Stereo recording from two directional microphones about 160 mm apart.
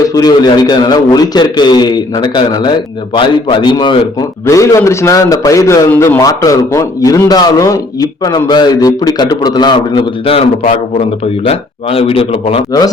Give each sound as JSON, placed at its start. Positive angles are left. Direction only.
{"t": 0.1, "sound": "a man's voice", "side_deg": 25}